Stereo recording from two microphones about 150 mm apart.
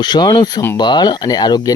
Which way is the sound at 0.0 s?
30° left (ahead or behind).